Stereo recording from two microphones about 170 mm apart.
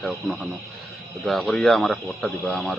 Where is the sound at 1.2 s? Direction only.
Centre (ahead or behind).